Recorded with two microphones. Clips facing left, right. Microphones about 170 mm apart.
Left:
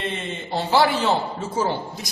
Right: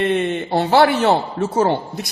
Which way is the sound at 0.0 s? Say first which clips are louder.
Right 11 dB; 65° right (ahead or behind).